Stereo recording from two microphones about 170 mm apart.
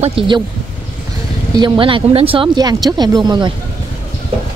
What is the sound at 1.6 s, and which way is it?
Speech, 30° right (ahead or behind).